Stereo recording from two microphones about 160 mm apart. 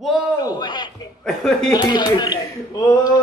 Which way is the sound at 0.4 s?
25° left (ahead or behind).